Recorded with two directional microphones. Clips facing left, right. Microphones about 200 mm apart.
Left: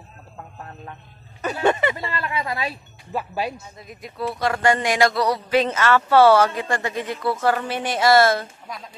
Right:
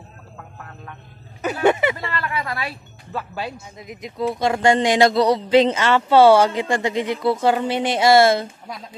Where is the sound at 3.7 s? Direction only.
15° right (ahead or behind).